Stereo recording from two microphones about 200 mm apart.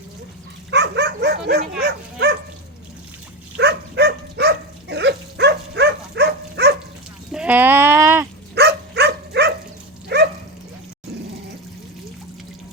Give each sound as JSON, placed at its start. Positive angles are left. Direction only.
{"t": 0.7, "sound": "dog", "side_deg": -60}
{"t": 3.6, "sound": "dog", "side_deg": -55}
{"t": 7.3, "sound": "sheep", "side_deg": -10}
{"t": 8.5, "sound": "dog", "side_deg": -55}